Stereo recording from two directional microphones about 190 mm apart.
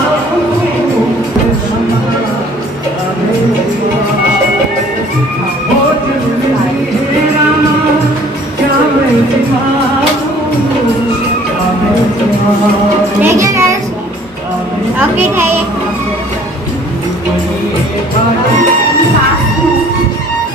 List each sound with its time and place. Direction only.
13.2 s music: 15° right (ahead or behind)
15.0 s a woman's voice: 10° right (ahead or behind)